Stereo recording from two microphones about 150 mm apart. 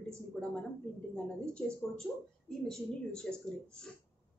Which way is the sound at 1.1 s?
5° left (ahead or behind).